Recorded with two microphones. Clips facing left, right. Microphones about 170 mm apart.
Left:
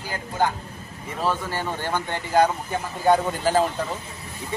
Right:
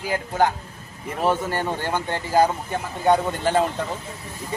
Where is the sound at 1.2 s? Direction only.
25° right (ahead or behind).